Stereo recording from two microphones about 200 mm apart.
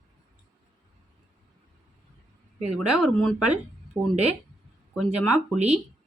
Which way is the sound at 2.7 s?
Centre (ahead or behind).